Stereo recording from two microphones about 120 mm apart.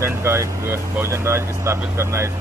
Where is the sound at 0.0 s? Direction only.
20° right (ahead or behind).